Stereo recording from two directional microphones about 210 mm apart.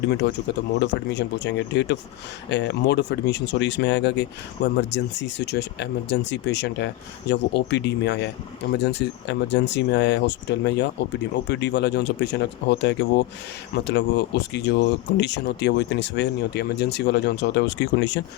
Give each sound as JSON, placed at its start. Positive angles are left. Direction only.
{"t": 0.1, "sound": "speech", "side_deg": 55}